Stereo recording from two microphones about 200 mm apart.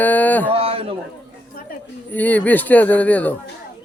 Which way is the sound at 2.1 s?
10° left (ahead or behind).